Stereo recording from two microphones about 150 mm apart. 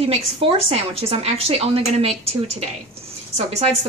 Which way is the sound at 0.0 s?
40° right (ahead or behind).